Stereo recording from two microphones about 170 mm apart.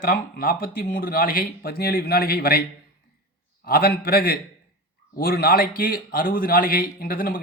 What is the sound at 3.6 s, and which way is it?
Speech, 65° left (ahead or behind).